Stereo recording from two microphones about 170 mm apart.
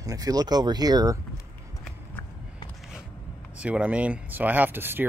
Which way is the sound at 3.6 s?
5° right (ahead or behind).